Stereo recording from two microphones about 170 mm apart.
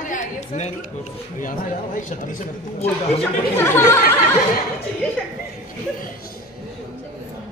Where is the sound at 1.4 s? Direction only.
50° left (ahead or behind).